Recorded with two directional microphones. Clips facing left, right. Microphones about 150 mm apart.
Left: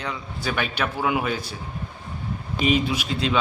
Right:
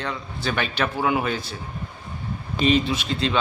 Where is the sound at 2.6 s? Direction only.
10° left (ahead or behind).